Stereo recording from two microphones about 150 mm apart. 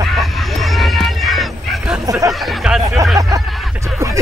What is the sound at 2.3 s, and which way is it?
Speech, centre (ahead or behind).